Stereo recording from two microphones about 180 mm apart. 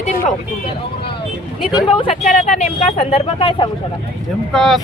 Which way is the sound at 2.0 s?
35° left (ahead or behind).